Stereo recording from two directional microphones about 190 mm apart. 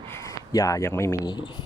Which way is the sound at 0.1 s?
15° left (ahead or behind).